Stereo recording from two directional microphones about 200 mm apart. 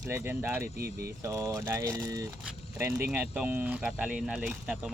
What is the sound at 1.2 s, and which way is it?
Speech, 15° right (ahead or behind).